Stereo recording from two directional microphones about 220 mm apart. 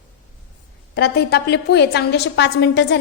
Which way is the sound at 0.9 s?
50° left (ahead or behind).